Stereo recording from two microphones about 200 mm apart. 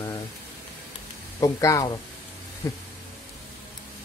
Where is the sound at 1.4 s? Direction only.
15° left (ahead or behind).